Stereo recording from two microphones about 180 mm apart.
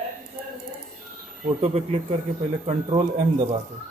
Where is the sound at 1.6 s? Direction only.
35° right (ahead or behind).